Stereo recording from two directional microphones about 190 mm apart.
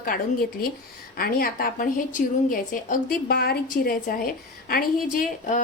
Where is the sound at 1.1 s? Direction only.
50° left (ahead or behind).